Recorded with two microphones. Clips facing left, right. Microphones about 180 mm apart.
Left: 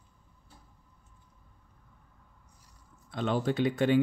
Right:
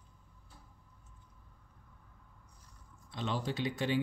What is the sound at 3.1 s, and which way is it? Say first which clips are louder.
Speech: left 8 dB; 55° left (ahead or behind).